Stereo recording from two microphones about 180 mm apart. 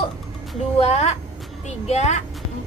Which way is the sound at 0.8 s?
35° left (ahead or behind).